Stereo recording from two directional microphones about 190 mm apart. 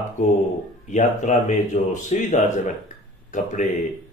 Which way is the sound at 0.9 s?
40° left (ahead or behind).